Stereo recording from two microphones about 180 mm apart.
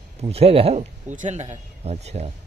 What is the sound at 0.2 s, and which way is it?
A man's voice, 35° right (ahead or behind).